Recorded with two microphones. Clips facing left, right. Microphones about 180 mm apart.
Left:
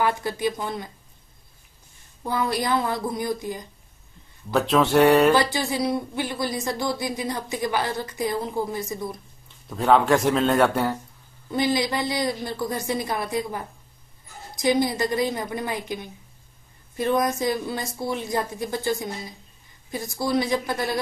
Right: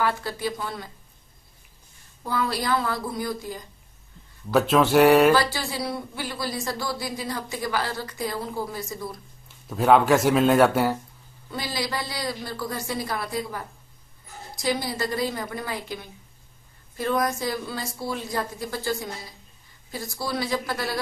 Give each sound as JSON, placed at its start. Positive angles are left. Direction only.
{"t": 0.0, "sound": "a woman's voice", "side_deg": 20}
{"t": 2.2, "sound": "a woman's voice", "side_deg": 20}
{"t": 4.5, "sound": "a man's voice", "side_deg": 0}
{"t": 5.3, "sound": "a woman's voice", "side_deg": 20}
{"t": 9.7, "sound": "a man's voice", "side_deg": -5}
{"t": 11.5, "sound": "a woman's voice", "side_deg": 20}